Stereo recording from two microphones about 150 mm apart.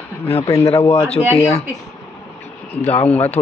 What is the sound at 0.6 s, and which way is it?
Speech, 40° left (ahead or behind).